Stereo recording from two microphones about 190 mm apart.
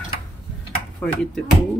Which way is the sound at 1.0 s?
5° left (ahead or behind).